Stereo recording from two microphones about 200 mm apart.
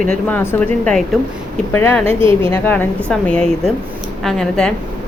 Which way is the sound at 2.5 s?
10° left (ahead or behind).